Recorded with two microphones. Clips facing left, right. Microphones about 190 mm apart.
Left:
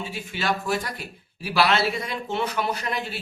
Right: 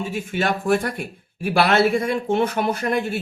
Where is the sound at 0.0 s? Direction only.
50° right (ahead or behind).